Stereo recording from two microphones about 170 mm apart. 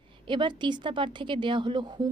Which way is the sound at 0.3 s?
25° right (ahead or behind).